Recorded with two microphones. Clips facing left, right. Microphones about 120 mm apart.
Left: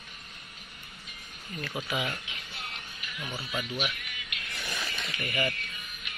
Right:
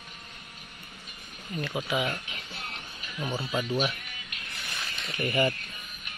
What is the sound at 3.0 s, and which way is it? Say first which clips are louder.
Speech: right 7 dB; 35° right (ahead or behind).